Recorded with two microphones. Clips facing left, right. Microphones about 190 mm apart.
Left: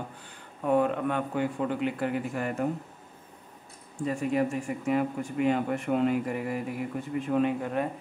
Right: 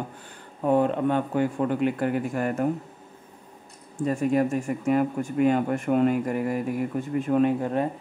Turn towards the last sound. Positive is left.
turn(degrees=-35)  # may be behind; listen again after turning